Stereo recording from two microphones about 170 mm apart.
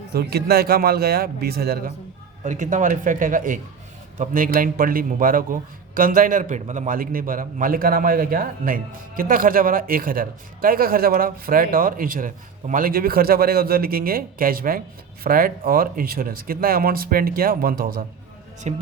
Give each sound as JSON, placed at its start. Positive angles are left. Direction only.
{"t": 0.1, "sound": "a man's voice", "side_deg": -65}
{"t": 2.4, "sound": "a man's voice", "side_deg": -45}
{"t": 18.7, "sound": "speech", "side_deg": -40}